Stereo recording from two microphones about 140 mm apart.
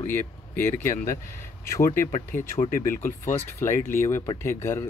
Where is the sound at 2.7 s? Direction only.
75° left (ahead or behind).